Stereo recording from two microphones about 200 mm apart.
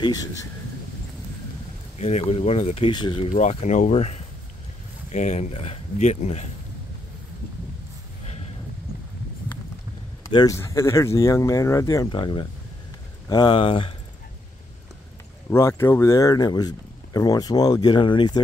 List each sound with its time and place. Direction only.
0.0 s speech: 20° left (ahead or behind)
2.0 s speech: 30° left (ahead or behind)
10.2 s speech: 15° left (ahead or behind)
15.5 s speech: 15° left (ahead or behind)